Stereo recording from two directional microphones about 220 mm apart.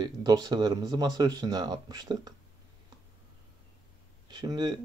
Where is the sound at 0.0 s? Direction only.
20° right (ahead or behind).